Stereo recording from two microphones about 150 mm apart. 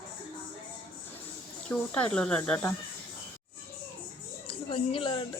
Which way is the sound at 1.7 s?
10° left (ahead or behind).